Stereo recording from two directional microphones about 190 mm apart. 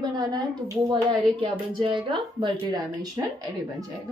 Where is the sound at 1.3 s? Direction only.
25° right (ahead or behind).